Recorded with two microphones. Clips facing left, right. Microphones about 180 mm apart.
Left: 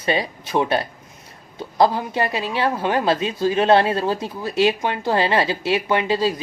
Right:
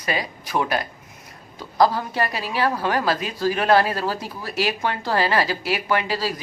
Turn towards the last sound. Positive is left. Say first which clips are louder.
# left 4 dB
turn(degrees=20)  # may be behind; listen again after turning